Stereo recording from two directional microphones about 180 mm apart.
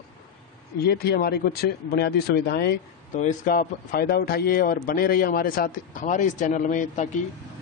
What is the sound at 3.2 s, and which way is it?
A man's voice, 45° left (ahead or behind).